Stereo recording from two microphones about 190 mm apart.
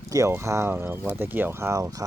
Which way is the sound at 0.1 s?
15° right (ahead or behind).